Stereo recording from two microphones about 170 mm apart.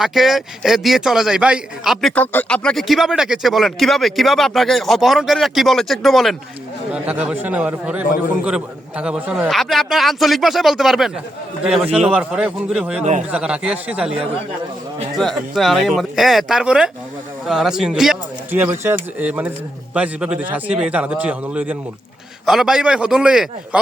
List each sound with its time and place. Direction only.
0.0 s a man's voice: centre (ahead or behind)
13.0 s speech: 45° right (ahead or behind)
13.3 s a man's voice: 5° right (ahead or behind)
18.6 s a man's voice: 15° right (ahead or behind)